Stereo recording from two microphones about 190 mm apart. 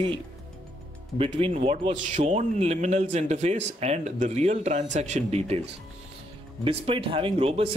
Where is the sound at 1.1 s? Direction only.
30° right (ahead or behind).